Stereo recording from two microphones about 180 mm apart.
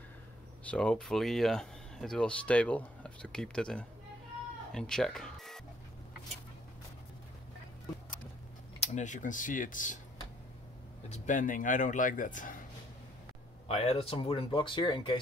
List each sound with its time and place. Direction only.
0.7 s speech: 5° left (ahead or behind)
8.7 s speech: 40° left (ahead or behind)
11.1 s speech: 45° left (ahead or behind)
13.7 s speech: 35° left (ahead or behind)